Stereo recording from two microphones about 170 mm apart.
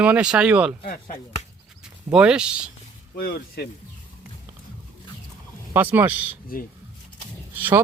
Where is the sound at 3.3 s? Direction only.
65° left (ahead or behind).